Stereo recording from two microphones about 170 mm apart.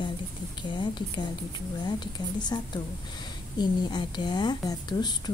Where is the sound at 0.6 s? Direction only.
25° left (ahead or behind).